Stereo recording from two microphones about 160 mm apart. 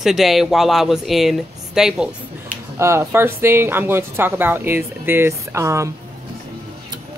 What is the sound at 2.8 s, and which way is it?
Speech, 15° right (ahead or behind).